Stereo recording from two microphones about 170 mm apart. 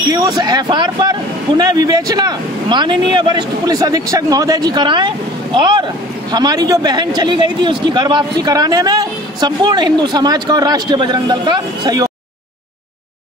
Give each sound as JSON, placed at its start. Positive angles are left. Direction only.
{"t": 0.1, "sound": "speech", "side_deg": -20}